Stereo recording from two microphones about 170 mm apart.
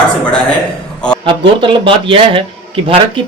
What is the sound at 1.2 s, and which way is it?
A man's voice, 30° right (ahead or behind).